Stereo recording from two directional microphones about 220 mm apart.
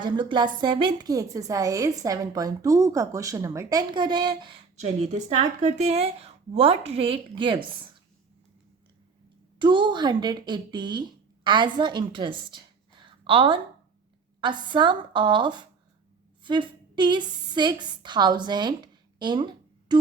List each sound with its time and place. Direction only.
0.0 s a woman's voice: 20° right (ahead or behind)
9.6 s a woman's voice: 20° right (ahead or behind)
19.9 s music: 20° right (ahead or behind)